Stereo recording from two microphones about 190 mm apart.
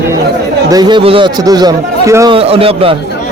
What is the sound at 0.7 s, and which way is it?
A man's voice, 20° right (ahead or behind).